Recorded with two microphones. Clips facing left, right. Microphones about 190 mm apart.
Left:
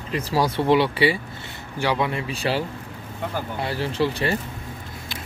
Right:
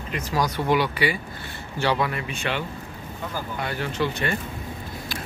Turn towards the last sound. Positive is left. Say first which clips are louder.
# left 3 dB
turn(degrees=30)  # may be behind; listen again after turning